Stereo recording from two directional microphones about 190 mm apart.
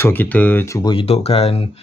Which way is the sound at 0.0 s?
10° left (ahead or behind).